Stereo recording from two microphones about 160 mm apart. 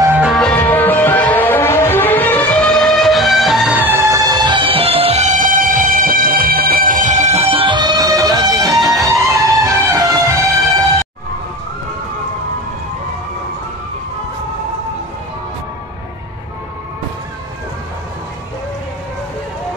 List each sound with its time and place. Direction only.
0.0 s music: 10° right (ahead or behind)
0.3 s music: 5° left (ahead or behind); by 10.4 s 20° right (ahead or behind)